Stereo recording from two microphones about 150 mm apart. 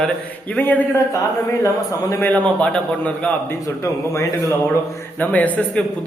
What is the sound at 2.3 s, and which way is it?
A man's voice, 10° left (ahead or behind).